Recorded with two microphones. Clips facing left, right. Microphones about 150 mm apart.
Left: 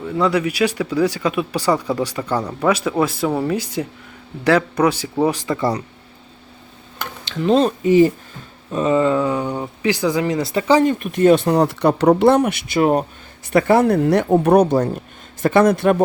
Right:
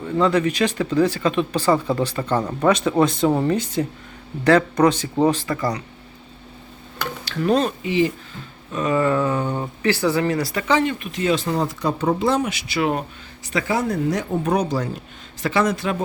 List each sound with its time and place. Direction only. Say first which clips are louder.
0.2 s speech: left 1 dB; 10° left (ahead or behind)
7.3 s speech: left 3 dB; 20° left (ahead or behind)
7.6 s speech: left 7 dB; 45° left (ahead or behind)
8.7 s speech: left 3 dB; 25° left (ahead or behind)
10.8 s speech: left 6 dB; 45° left (ahead or behind)
13.5 s speech: left 8 dB; 60° left (ahead or behind)